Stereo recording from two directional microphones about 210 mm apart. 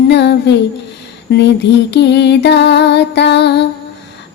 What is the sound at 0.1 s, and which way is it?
Music, 55° left (ahead or behind).